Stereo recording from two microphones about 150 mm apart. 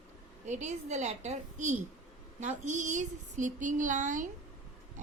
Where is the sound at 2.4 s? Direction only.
55° right (ahead or behind).